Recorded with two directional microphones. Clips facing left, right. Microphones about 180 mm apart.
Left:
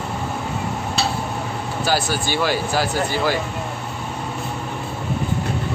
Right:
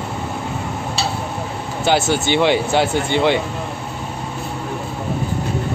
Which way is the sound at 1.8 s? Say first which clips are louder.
Right 5 dB; 25° right (ahead or behind).